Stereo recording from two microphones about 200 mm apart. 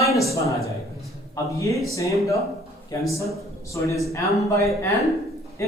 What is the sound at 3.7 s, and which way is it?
Speech, 15° left (ahead or behind).